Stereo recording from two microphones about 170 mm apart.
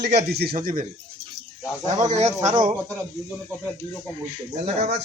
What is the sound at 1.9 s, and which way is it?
Speech, 45° right (ahead or behind).